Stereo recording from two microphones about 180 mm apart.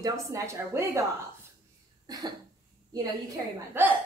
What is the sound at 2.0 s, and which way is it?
Cough, 20° right (ahead or behind).